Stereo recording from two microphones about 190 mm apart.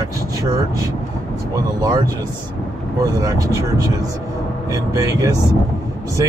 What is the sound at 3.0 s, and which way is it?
Speech, 20° right (ahead or behind).